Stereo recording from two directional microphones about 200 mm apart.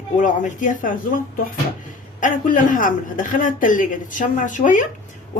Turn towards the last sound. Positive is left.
turn(degrees=40)  # may be behind; listen again after turning